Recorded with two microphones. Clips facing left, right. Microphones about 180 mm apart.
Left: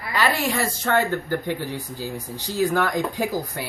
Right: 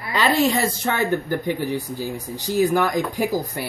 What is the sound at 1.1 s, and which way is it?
Speech, 15° right (ahead or behind).